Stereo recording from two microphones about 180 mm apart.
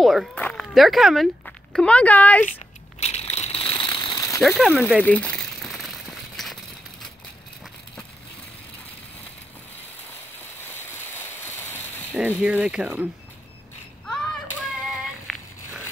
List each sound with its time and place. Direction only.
0.0 s speech: centre (ahead or behind)
3.0 s crumpling: 35° left (ahead or behind); by 4.4 s 20° left (ahead or behind)
4.4 s speech: centre (ahead or behind)
5.0 s crumpling: 10° left (ahead or behind)
10.6 s a sound: 10° left (ahead or behind)
12.1 s speech: 10° right (ahead or behind)
15.3 s a sound: 5° left (ahead or behind)